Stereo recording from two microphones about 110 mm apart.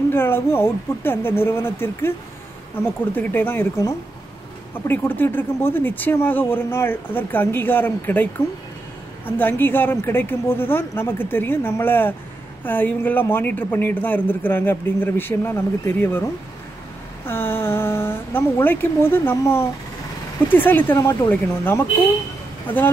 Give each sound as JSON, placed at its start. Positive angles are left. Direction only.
{"t": 0.1, "sound": "speech", "side_deg": 20}
{"t": 4.8, "sound": "speech", "side_deg": 20}
{"t": 17.3, "sound": "speech", "side_deg": 20}